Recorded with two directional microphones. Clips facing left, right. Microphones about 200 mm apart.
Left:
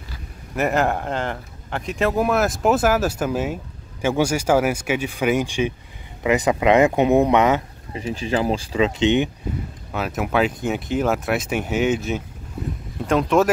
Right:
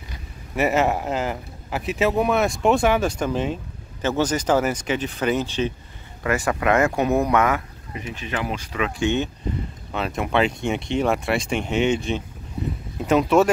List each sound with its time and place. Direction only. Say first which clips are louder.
0.6 s speech: even; centre (ahead or behind); by 9.3 s 20° left (ahead or behind)
9.9 s speech: left 1 dB; 5° left (ahead or behind)